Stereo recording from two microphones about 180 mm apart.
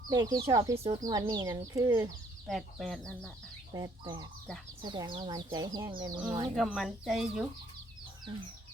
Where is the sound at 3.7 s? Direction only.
20° right (ahead or behind).